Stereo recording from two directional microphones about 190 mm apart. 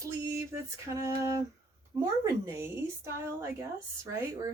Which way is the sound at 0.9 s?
15° right (ahead or behind).